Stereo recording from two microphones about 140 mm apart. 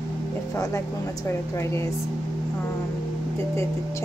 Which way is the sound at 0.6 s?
20° left (ahead or behind).